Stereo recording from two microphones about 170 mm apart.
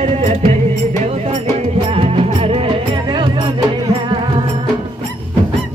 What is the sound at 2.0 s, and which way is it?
Music, 35° right (ahead or behind).